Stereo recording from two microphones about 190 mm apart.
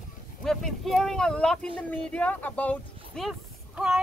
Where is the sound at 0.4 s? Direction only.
Centre (ahead or behind).